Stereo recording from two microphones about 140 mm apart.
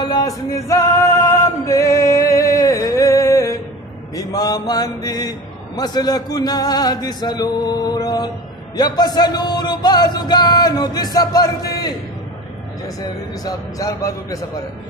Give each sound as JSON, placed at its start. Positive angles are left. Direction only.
{"t": 0.0, "sound": "music", "side_deg": 25}
{"t": 4.1, "sound": "mantra", "side_deg": 25}
{"t": 5.8, "sound": "speech", "side_deg": 30}
{"t": 13.4, "sound": "speech", "side_deg": 25}